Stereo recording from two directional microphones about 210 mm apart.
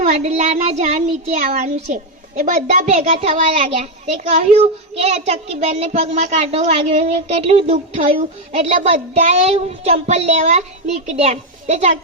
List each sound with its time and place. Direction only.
0.0 s speech: 30° right (ahead or behind)